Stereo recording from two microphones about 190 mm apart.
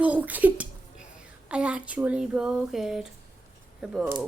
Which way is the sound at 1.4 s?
5° right (ahead or behind).